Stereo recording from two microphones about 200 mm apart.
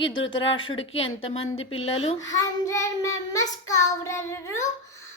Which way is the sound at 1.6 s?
80° left.